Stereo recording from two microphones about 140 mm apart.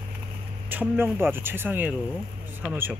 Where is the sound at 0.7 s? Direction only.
15° right (ahead or behind).